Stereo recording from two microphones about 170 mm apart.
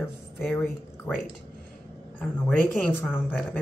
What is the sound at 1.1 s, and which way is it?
A woman's voice, 10° left (ahead or behind).